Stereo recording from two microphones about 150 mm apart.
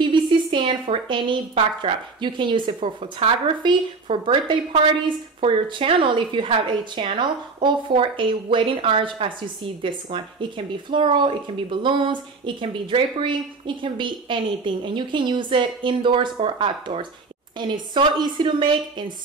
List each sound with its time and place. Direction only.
0.0 s speech: 35° right (ahead or behind)